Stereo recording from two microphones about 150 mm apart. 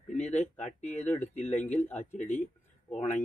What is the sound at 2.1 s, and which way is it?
Speech, 50° left (ahead or behind).